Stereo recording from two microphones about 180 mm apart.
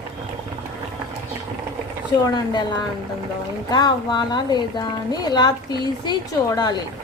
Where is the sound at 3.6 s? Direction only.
25° left (ahead or behind).